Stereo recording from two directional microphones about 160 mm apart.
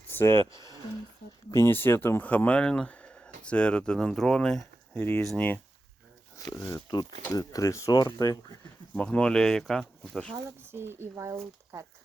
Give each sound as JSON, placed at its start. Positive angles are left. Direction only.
{"t": 0.1, "sound": "speech", "side_deg": 15}
{"t": 6.5, "sound": "speech", "side_deg": 20}
{"t": 9.0, "sound": "speech", "side_deg": 5}
{"t": 10.6, "sound": "speech", "side_deg": -15}